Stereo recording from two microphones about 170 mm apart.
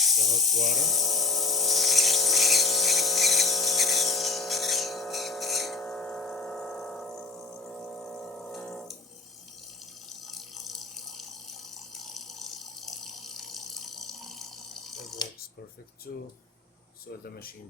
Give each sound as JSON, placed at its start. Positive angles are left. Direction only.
{"t": 0.0, "sound": "speech", "side_deg": 0}
{"t": 0.8, "sound": "a sound", "side_deg": 0}
{"t": 10.2, "sound": "water", "side_deg": 0}
{"t": 17.2, "sound": "speech", "side_deg": 60}